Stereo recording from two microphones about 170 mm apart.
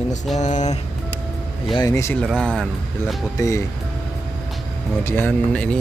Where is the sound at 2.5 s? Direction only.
5° left (ahead or behind).